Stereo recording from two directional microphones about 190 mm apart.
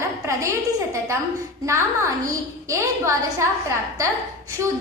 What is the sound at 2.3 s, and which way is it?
A woman's voice, 15° right (ahead or behind).